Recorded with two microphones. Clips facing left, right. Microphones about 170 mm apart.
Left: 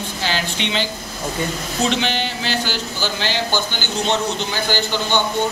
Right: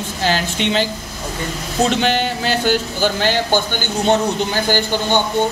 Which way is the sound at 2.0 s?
45° right (ahead or behind).